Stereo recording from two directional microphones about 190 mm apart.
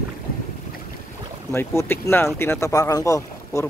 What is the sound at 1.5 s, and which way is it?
Speech, 15° left (ahead or behind).